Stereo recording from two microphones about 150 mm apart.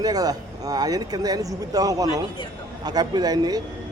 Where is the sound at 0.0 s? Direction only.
25° right (ahead or behind).